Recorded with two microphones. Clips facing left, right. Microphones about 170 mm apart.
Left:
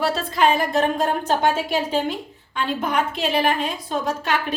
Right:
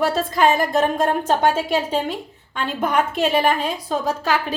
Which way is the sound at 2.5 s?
50° right (ahead or behind).